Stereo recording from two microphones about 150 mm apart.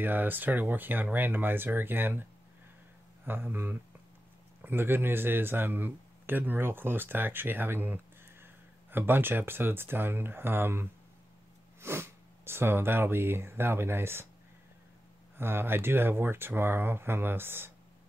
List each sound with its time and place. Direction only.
0.0 s speech: 15° right (ahead or behind)
3.3 s speech: 15° right (ahead or behind)
15.3 s speech: 15° right (ahead or behind)